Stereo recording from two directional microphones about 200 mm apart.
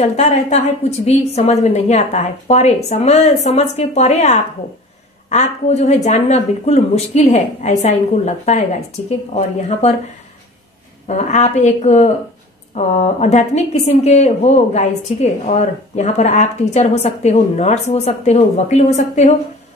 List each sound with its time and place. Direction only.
0.0 s a woman's voice: 35° left (ahead or behind)
11.1 s a woman's voice: 35° left (ahead or behind)